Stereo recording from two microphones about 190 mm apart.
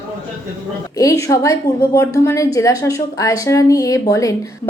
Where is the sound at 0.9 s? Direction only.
15° left (ahead or behind).